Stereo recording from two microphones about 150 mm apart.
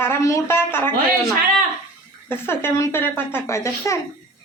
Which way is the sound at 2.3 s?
15° left (ahead or behind).